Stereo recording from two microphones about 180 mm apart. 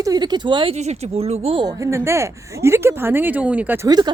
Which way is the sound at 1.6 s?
15° right (ahead or behind).